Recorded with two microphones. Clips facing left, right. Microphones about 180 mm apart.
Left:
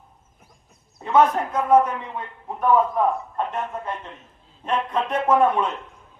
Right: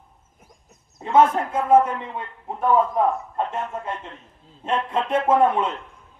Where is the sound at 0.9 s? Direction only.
25° right (ahead or behind).